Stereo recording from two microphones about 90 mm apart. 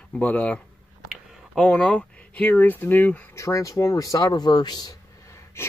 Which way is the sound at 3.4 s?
35° left (ahead or behind).